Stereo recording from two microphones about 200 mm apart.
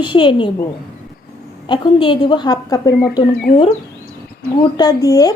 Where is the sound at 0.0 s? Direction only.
25° left (ahead or behind).